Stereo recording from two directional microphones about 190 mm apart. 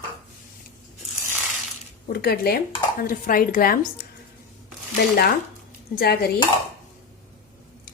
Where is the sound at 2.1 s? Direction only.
55° left (ahead or behind).